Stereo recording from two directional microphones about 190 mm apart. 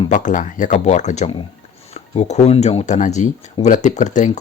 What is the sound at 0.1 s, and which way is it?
Speech, 40° left (ahead or behind).